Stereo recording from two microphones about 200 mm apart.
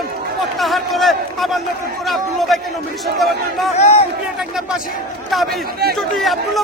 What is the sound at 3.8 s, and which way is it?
Speech, 35° left (ahead or behind).